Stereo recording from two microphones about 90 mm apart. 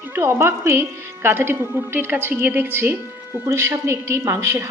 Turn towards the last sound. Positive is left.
turn(degrees=-30)  # may be behind; listen again after turning